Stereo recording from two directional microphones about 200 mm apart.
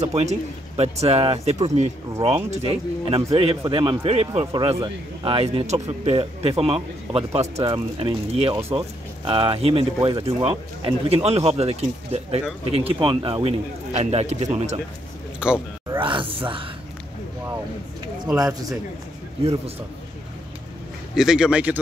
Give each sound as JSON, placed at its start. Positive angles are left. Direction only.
{"t": 0.0, "sound": "speech", "side_deg": -35}
{"t": 9.9, "sound": "speech", "side_deg": -15}
{"t": 10.2, "sound": "speech", "side_deg": -30}
{"t": 15.4, "sound": "a sound", "side_deg": -5}
{"t": 16.0, "sound": "a sound", "side_deg": -25}
{"t": 18.4, "sound": "speech", "side_deg": -20}
{"t": 19.4, "sound": "speech", "side_deg": -30}
{"t": 21.1, "sound": "speech", "side_deg": -5}